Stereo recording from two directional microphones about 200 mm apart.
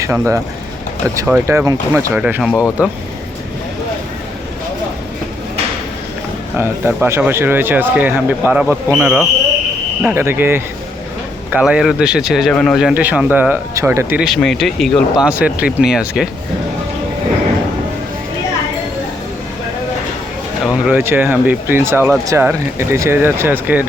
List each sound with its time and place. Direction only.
0.0 s speech: 15° right (ahead or behind)
1.5 s speech: 15° right (ahead or behind)
2.5 s speech: 15° left (ahead or behind)
6.6 s speech: 10° right (ahead or behind)
20.7 s speech: 5° right (ahead or behind)